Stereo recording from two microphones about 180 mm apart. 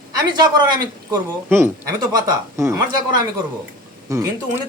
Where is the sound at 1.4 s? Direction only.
10° right (ahead or behind).